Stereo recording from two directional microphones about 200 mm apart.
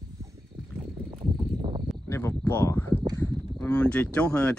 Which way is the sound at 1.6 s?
25° right (ahead or behind).